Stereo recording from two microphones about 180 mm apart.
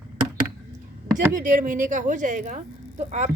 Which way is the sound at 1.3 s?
45° right (ahead or behind).